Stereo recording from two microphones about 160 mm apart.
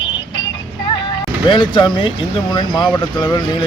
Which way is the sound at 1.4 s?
30° left (ahead or behind).